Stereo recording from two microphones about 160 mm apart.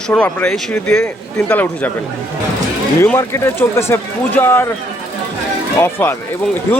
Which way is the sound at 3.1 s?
15° left (ahead or behind).